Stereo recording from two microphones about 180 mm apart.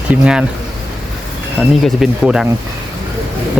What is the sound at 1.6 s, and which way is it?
Speech, centre (ahead or behind).